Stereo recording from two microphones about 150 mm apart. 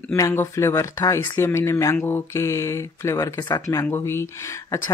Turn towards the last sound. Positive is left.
turn(degrees=20)  # may be behind; listen again after turning